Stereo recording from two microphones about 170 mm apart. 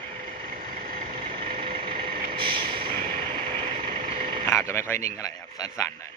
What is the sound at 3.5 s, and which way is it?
Vehicle, 30° right (ahead or behind).